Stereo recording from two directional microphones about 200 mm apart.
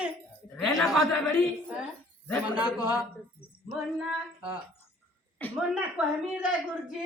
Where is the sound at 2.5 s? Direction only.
20° left (ahead or behind).